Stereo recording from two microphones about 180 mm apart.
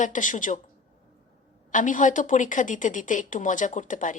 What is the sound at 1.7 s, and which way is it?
Speech, 45° left (ahead or behind).